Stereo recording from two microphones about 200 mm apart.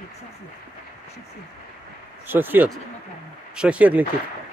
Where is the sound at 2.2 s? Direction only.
10° right (ahead or behind).